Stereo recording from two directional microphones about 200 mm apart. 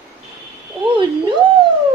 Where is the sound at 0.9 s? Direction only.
25° right (ahead or behind).